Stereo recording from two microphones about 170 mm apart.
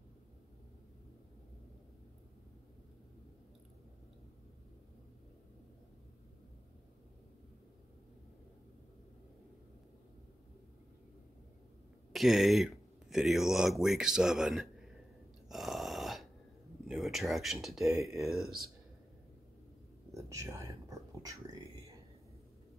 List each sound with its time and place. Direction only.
12.1 s speech: centre (ahead or behind)
15.4 s a sound: centre (ahead or behind)
16.8 s speech: centre (ahead or behind)
18.0 s speech: 20° right (ahead or behind)
20.1 s whispering: 15° right (ahead or behind)